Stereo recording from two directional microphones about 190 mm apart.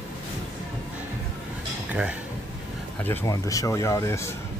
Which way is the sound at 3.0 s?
15° left (ahead or behind).